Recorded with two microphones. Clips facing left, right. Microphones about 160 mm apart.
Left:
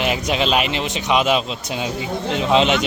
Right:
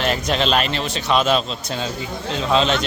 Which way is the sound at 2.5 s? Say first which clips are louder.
Left 2 dB; 15° left (ahead or behind).